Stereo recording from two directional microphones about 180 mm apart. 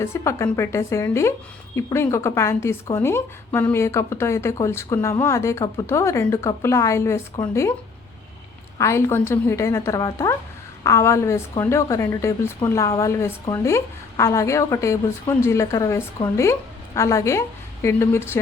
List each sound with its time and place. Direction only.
0.0 s speech: 15° left (ahead or behind)
8.8 s speech: 15° left (ahead or behind)